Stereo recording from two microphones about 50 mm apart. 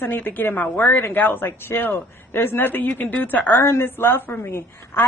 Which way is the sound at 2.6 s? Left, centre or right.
Left.